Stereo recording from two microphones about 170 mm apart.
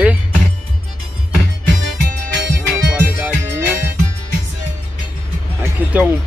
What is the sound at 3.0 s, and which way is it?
Music, 10° right (ahead or behind).